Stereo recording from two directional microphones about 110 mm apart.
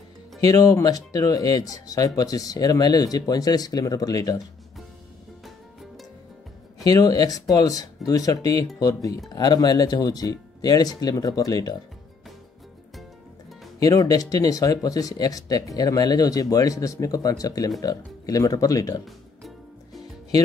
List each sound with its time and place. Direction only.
0.5 s speech: 30° left (ahead or behind)
6.8 s speech: 35° left (ahead or behind)
13.7 s speech: 35° left (ahead or behind)